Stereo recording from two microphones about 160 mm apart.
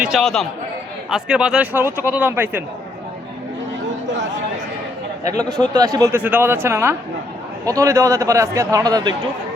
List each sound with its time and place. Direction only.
0.0 s a man's voice: centre (ahead or behind)
5.5 s a man's voice: 25° right (ahead or behind)